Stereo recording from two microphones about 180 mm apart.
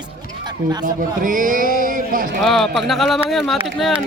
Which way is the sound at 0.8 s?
50° right (ahead or behind).